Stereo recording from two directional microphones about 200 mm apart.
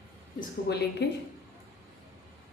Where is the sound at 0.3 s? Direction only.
55° left (ahead or behind).